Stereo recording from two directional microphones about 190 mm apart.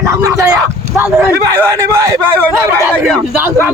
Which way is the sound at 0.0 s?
15° right (ahead or behind).